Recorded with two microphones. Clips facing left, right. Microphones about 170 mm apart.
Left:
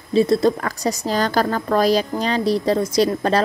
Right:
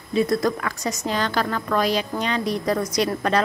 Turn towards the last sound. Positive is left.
turn(degrees=30)  # may be behind; listen again after turning